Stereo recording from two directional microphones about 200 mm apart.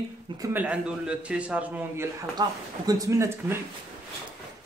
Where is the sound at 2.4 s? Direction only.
20° right (ahead or behind).